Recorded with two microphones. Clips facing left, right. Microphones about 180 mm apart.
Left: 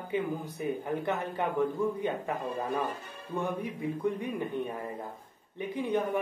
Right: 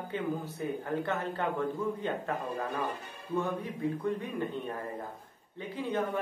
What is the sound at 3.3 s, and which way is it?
Speech, 15° left (ahead or behind).